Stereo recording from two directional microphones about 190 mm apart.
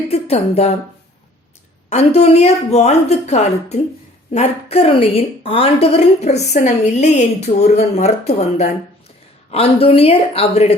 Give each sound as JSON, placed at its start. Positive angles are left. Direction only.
{"t": 0.1, "sound": "a woman's voice", "side_deg": 35}
{"t": 1.9, "sound": "a woman's voice", "side_deg": 35}